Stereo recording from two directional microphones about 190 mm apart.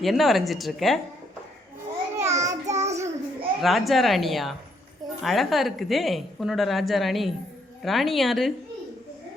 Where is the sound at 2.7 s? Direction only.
35° right (ahead or behind).